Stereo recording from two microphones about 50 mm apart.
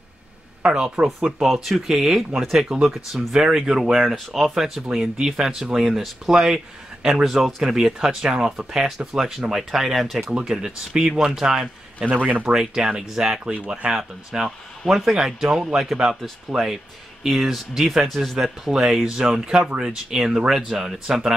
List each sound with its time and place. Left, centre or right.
1.0 s speech: right
1.4 s speech: centre
7.2 s speech: centre
12.1 s speech: right
12.5 s speech: centre
13.5 s speech: right
14.9 s speech: centre
18.7 s speech: centre